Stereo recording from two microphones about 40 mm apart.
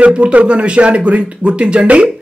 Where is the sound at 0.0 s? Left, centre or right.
Right.